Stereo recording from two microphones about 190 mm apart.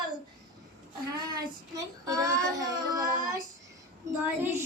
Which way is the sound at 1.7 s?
20° right (ahead or behind).